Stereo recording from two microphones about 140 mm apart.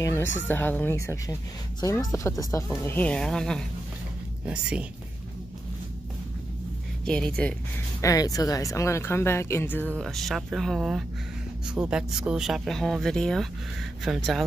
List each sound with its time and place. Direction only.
0.0 s speech: 20° left (ahead or behind)
4.5 s speech: 5° right (ahead or behind)
7.1 s speech: 5° left (ahead or behind)
8.0 s speech: 25° left (ahead or behind); by 14.4 s centre (ahead or behind)